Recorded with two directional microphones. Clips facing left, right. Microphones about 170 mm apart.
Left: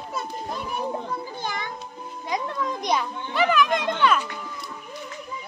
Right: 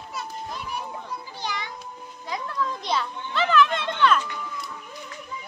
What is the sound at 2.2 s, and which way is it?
A child's voice, 20° left (ahead or behind).